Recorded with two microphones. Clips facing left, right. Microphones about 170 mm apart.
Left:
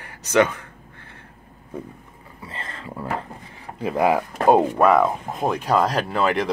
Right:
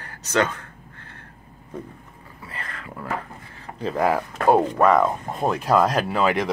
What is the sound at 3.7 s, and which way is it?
Speech, 15° left (ahead or behind).